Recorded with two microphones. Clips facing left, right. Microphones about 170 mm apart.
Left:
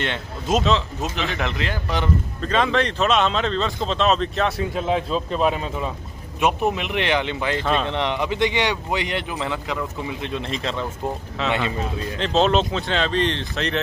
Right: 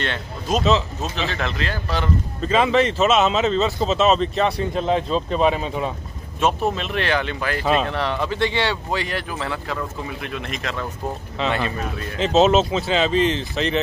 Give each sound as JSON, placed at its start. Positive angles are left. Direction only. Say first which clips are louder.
{"t": 0.0, "sound": "speech", "louder": "even", "side_deg": 20}
{"t": 2.4, "sound": "speech", "louder": "right 3 dB", "side_deg": -5}
{"t": 6.4, "sound": "speech", "louder": "even", "side_deg": 15}
{"t": 7.6, "sound": "speech", "louder": "right 4 dB", "side_deg": -5}
{"t": 7.9, "sound": "speech", "louder": "even", "side_deg": 20}
{"t": 10.2, "sound": "speech", "louder": "left 3 dB", "side_deg": 30}
{"t": 12.2, "sound": "speech", "louder": "right 3 dB", "side_deg": -5}